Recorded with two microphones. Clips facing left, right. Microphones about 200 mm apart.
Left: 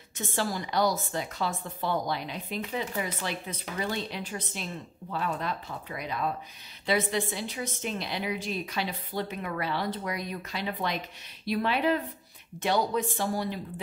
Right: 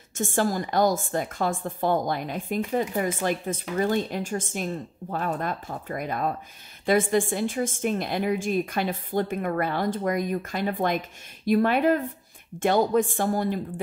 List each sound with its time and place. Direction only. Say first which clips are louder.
0.1 s a woman's voice: right 6 dB; 50° right (ahead or behind)